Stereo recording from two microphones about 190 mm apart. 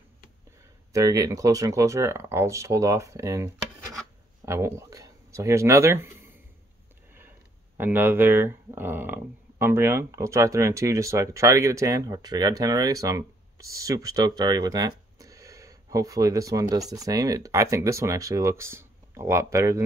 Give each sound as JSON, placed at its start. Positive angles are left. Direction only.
{"t": 0.9, "sound": "speech", "side_deg": -15}